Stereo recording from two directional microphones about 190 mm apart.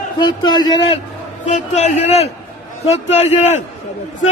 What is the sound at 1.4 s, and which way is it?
A man's voice, 40° left (ahead or behind).